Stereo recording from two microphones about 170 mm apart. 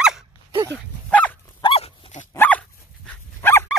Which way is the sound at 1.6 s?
30° left (ahead or behind).